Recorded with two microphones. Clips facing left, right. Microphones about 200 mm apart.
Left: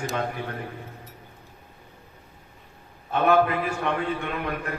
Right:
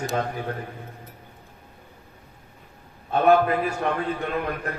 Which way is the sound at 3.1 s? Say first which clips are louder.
Right 2 dB; 40° right (ahead or behind).